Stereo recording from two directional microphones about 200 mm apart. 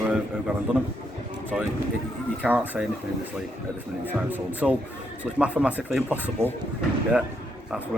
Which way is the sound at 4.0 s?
10° right (ahead or behind).